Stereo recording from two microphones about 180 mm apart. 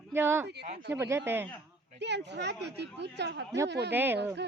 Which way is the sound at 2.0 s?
70° right (ahead or behind).